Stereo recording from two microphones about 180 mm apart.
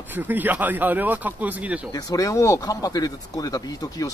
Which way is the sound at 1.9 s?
20° left (ahead or behind).